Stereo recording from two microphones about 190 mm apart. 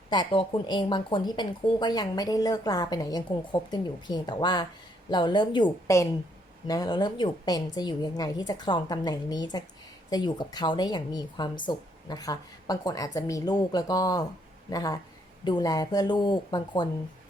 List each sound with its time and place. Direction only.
0.1 s speech: 25° left (ahead or behind)